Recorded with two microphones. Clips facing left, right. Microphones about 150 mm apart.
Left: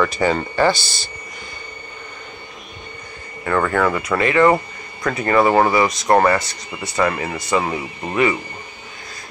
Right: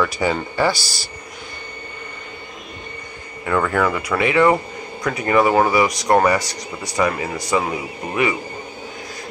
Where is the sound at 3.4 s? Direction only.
5° right (ahead or behind).